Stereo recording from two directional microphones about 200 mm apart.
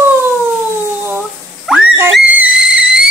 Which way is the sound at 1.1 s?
5° right (ahead or behind).